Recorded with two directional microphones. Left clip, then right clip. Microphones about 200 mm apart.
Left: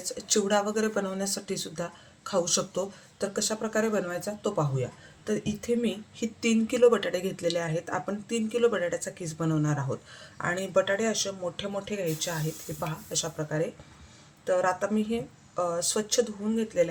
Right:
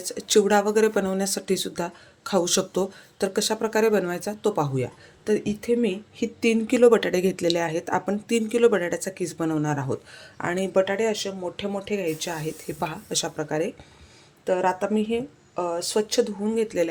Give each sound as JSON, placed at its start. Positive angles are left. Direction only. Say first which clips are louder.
{"t": 0.0, "sound": "speech", "louder": "right 7 dB", "side_deg": -40}